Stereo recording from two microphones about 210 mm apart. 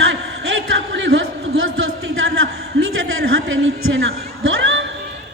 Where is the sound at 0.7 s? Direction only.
65° right (ahead or behind).